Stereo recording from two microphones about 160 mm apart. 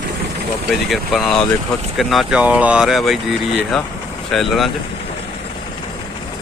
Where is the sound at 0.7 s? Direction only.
Centre (ahead or behind).